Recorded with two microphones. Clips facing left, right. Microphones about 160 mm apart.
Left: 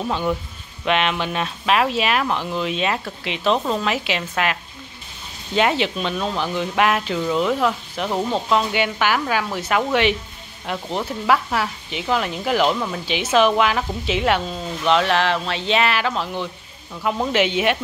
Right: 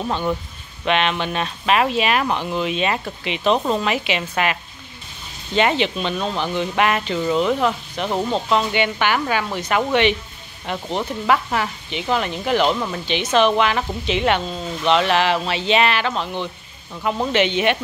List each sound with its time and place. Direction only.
0.0 s speech: centre (ahead or behind)